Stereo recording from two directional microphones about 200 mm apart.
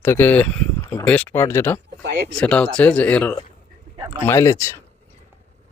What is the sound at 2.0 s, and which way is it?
Speech, 55° right (ahead or behind).